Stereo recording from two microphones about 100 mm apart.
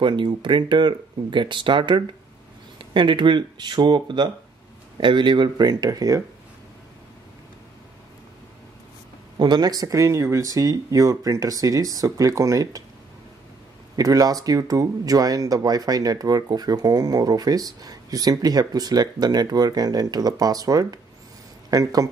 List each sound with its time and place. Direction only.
0.0 s speech: 50° right (ahead or behind); by 6.2 s 35° right (ahead or behind)
9.4 s speech: 45° right (ahead or behind)
13.9 s speech: 40° right (ahead or behind)